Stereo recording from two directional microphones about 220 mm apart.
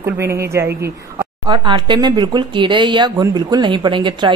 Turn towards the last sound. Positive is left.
turn(degrees=-20)  # may be behind; listen again after turning